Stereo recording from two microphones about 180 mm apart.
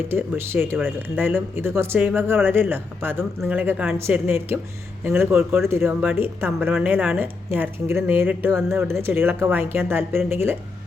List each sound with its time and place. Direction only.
0.1 s speech: 15° right (ahead or behind)